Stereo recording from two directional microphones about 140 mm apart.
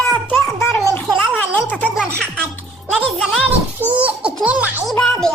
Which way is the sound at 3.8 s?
10° right (ahead or behind).